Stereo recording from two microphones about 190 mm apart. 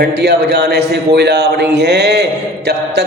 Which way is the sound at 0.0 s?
60° right (ahead or behind).